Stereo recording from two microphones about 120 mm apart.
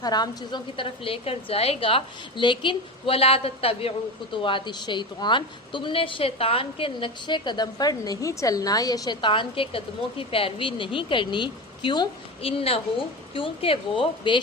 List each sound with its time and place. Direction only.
0.0 s a woman's voice: 35° left (ahead or behind)